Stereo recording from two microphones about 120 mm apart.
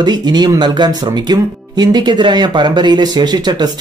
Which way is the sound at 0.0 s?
35° right (ahead or behind).